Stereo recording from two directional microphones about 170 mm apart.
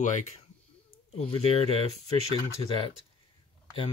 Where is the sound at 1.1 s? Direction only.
35° left (ahead or behind).